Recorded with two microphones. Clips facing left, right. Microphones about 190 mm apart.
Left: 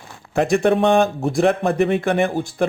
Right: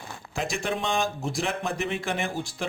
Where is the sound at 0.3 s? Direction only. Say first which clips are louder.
Left 13 dB; 60° left (ahead or behind).